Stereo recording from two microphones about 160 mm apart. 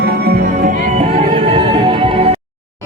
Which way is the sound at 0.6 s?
45° right (ahead or behind).